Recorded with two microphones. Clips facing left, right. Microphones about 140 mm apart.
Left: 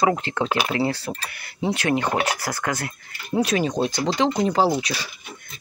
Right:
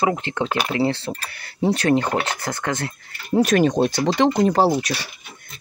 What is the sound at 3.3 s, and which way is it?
Speech, 50° right (ahead or behind).